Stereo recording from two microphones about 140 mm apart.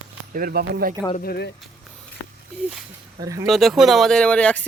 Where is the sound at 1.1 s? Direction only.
90° left.